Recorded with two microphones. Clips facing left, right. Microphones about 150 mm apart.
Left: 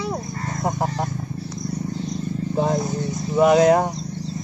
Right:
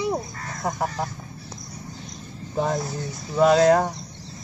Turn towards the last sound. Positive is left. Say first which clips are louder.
# left 2 dB
turn(degrees=15)  # may be behind; listen again after turning